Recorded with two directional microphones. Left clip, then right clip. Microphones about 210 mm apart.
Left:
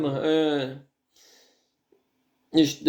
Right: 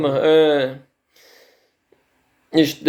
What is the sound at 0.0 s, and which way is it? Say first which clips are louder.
Speech: right 9 dB; centre (ahead or behind).